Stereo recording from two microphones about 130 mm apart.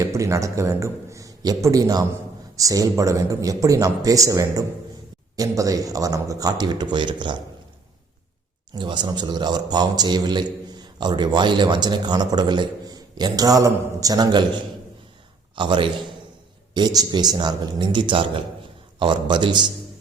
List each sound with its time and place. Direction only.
0.0 s a man's voice: 25° right (ahead or behind)
8.7 s a man's voice: 35° right (ahead or behind)